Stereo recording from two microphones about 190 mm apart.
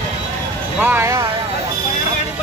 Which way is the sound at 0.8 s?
10° right (ahead or behind).